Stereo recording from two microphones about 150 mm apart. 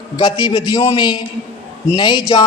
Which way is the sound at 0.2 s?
30° left (ahead or behind).